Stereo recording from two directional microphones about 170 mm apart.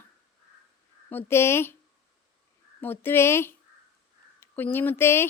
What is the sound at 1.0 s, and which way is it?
Speech, 15° left (ahead or behind).